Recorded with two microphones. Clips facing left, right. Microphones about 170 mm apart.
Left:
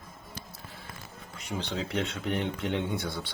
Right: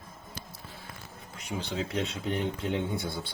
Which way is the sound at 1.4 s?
5° right (ahead or behind).